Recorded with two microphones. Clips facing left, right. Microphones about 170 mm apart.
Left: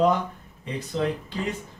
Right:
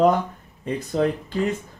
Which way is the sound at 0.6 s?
50° right (ahead or behind).